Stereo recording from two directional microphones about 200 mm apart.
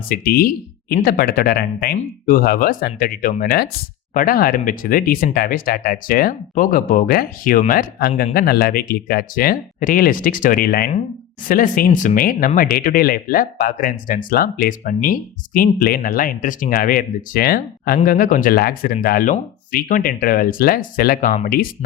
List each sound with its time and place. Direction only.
0.1 s speech: 45° left (ahead or behind)